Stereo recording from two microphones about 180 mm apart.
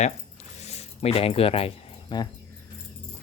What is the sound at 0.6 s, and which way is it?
Cricket, 35° left (ahead or behind).